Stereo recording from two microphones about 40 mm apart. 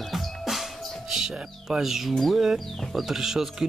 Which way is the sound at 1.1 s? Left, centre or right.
Centre.